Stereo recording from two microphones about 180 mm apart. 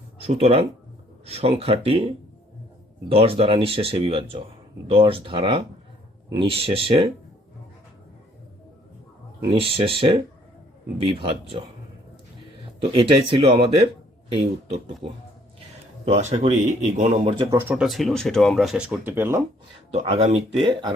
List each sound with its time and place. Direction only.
0.2 s speech: 35° right (ahead or behind)
3.1 s speech: 30° right (ahead or behind)
9.5 s speech: 30° right (ahead or behind)
12.8 s speech: 30° right (ahead or behind)
15.0 s speech: 30° right (ahead or behind)
17.4 s speech: 15° right (ahead or behind)
19.9 s speech: 35° right (ahead or behind)